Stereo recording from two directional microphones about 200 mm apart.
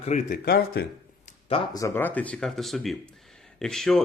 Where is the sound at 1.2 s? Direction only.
30° left (ahead or behind).